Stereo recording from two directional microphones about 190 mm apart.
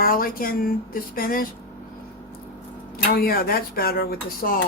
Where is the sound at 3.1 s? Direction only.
50° left (ahead or behind).